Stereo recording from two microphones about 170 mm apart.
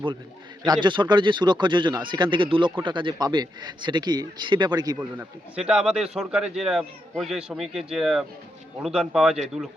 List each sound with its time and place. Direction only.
0.6 s a man's voice: 25° right (ahead or behind)
4.9 s speech: 5° right (ahead or behind)